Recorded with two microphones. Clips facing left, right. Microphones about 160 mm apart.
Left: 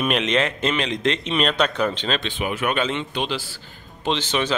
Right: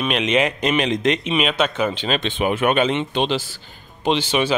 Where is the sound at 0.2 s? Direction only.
10° right (ahead or behind).